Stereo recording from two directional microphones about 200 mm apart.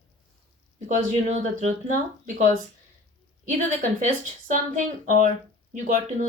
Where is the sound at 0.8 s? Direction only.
35° right (ahead or behind).